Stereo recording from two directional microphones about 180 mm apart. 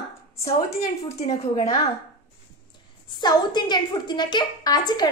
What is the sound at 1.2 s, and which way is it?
Speech, 35° left (ahead or behind).